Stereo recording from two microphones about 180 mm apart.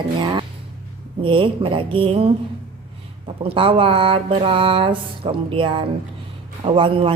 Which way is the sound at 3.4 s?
30° right (ahead or behind).